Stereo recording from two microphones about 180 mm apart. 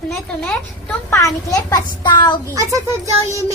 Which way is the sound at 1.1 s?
15° left (ahead or behind).